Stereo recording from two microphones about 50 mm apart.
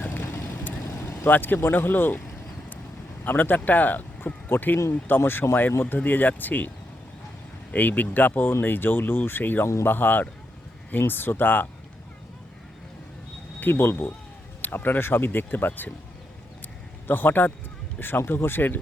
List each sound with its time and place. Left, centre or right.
0.2 s vehicle: left
1.2 s speech: left
3.2 s speech: left
7.7 s speech: left
13.6 s speech: left
17.1 s speech: left